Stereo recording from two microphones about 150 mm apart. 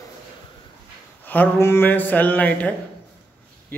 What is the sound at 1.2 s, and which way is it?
Speech, 10° left (ahead or behind).